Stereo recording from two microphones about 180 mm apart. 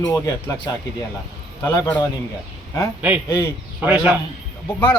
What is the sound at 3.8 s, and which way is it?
Speech, 10° right (ahead or behind).